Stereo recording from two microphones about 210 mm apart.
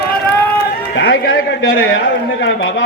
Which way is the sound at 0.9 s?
50° left (ahead or behind).